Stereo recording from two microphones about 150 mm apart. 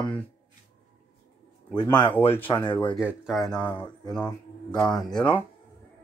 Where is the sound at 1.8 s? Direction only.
30° left (ahead or behind).